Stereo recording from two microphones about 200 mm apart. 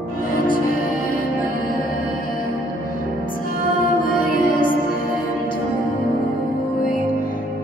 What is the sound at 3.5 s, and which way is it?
Music, 45° left (ahead or behind).